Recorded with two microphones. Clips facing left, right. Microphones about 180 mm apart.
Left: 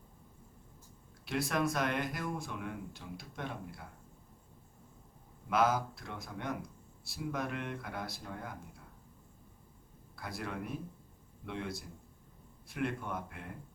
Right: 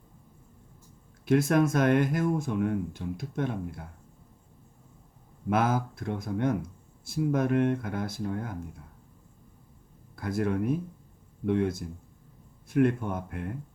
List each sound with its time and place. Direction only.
1.2 s speech: 50° right (ahead or behind)
5.5 s speech: 50° right (ahead or behind)
10.2 s speech: 50° right (ahead or behind)